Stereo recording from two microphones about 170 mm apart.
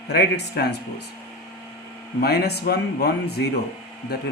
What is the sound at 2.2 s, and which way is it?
Speech, 70° left (ahead or behind).